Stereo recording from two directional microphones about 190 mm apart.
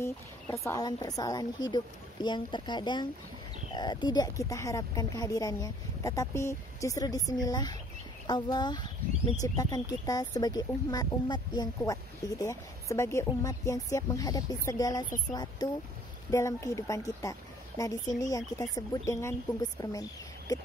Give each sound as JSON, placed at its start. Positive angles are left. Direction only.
{"t": 0.0, "sound": "speech", "side_deg": 15}